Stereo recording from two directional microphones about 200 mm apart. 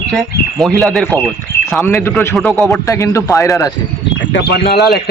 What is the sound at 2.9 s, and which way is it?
Speech, 15° left (ahead or behind).